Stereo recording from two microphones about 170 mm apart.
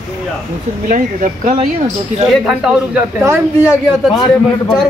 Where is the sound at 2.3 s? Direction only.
Centre (ahead or behind).